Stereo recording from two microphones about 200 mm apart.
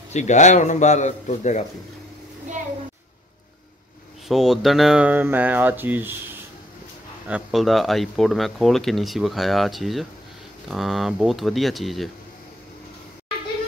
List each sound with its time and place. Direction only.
0.1 s a man's voice: 35° left (ahead or behind)
4.3 s speech: centre (ahead or behind)
7.2 s speech: 5° right (ahead or behind)